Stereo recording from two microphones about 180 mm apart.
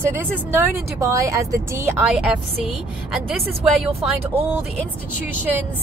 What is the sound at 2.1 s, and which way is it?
Speech, 5° right (ahead or behind).